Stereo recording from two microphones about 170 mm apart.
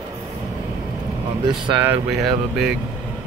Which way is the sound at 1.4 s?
25° right (ahead or behind).